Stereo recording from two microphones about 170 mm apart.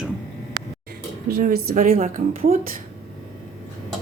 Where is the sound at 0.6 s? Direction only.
20° right (ahead or behind).